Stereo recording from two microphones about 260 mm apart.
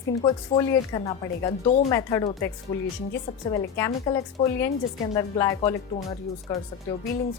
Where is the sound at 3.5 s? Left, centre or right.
Centre.